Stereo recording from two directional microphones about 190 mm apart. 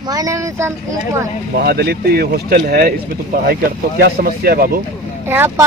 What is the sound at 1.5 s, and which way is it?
Speech, 55° right (ahead or behind).